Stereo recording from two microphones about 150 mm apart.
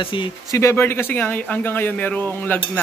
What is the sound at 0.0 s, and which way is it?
Speech, 35° left (ahead or behind).